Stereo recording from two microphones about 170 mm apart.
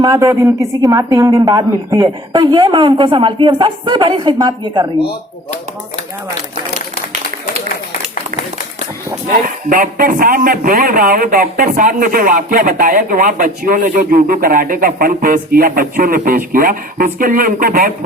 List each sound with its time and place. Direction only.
0.2 s a woman's voice: 15° right (ahead or behind)
9.6 s a man's voice: 55° right (ahead or behind)